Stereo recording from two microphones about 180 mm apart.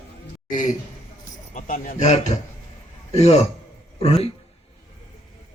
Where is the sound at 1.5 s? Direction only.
45° left (ahead or behind).